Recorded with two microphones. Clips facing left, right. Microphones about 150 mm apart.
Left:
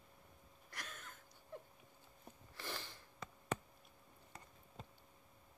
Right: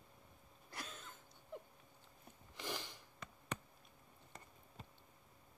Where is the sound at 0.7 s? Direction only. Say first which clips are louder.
Right 2 dB; 25° right (ahead or behind).